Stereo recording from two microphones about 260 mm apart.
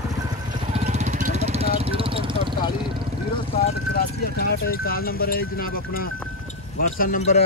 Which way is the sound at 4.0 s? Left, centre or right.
Left.